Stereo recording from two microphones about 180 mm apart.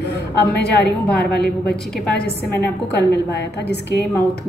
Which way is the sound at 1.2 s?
65° left (ahead or behind).